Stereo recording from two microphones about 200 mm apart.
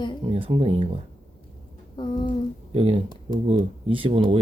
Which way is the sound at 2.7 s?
30° right (ahead or behind).